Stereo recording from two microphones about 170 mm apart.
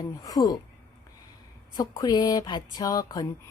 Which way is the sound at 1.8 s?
25° left (ahead or behind).